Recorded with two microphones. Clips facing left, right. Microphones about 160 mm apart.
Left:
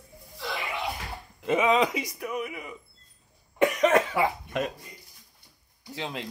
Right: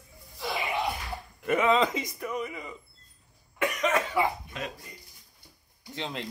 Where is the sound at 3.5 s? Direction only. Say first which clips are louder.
Left 6 dB; 35° left (ahead or behind).